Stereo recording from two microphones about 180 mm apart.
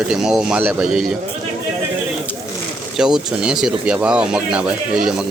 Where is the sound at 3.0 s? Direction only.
5° right (ahead or behind).